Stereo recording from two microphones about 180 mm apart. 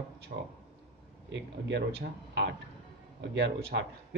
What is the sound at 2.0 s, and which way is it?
A man's voice, 70° right (ahead or behind).